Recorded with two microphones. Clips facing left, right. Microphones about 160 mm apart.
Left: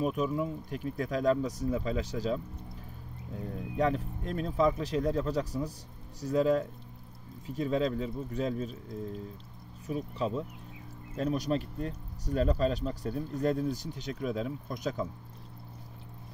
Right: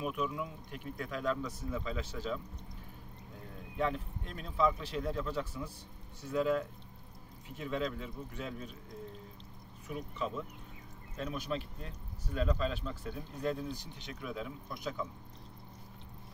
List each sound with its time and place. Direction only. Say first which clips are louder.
0.0 s speech: left 6 dB; 40° left (ahead or behind)
3.7 s speech: left 5 dB; 40° left (ahead or behind)
9.8 s speech: left 6 dB; 35° left (ahead or behind)